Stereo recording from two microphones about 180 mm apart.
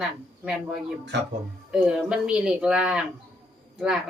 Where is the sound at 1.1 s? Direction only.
75° right (ahead or behind).